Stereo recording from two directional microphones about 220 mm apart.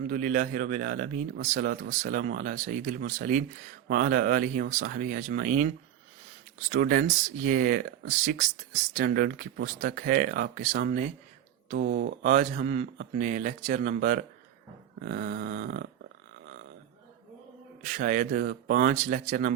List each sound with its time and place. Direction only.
0.1 s speech: 35° right (ahead or behind)
17.8 s speech: 35° right (ahead or behind)